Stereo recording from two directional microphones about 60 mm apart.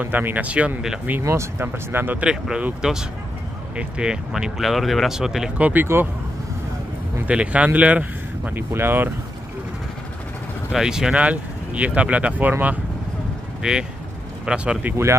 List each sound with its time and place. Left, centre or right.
0.0 s speech: right
1.2 s speech: right
2.2 s speech: centre
5.6 s speech: right
7.2 s speech: right
8.7 s speech: right
10.7 s speech: centre
11.1 s speech: right
13.6 s speech: centre